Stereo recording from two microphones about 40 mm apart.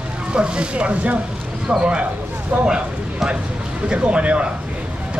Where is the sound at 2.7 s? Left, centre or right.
Centre.